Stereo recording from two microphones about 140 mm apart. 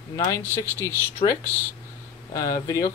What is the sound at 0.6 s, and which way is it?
Speech, 20° left (ahead or behind).